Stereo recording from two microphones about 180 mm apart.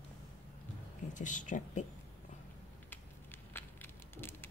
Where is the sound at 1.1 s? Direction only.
45° left (ahead or behind).